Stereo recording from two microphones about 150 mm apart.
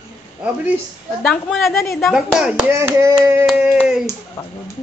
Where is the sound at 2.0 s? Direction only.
Centre (ahead or behind).